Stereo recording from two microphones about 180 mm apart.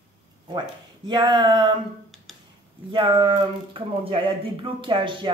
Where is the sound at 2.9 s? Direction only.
25° right (ahead or behind).